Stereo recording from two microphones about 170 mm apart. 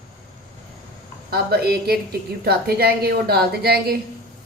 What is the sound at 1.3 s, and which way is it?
A woman's voice, 65° right (ahead or behind).